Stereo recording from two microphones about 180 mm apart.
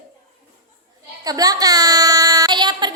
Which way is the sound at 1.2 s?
20° right (ahead or behind).